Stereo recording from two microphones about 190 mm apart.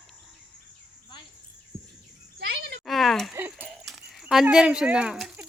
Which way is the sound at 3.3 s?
10° right (ahead or behind).